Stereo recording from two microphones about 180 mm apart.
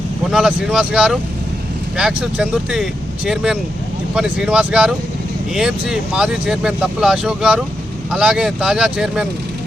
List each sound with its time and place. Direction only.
0.3 s speech: 5° right (ahead or behind)